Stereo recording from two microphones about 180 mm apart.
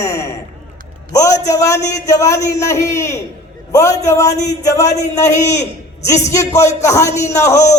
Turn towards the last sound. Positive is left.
turn(degrees=15)  # may be behind; listen again after turning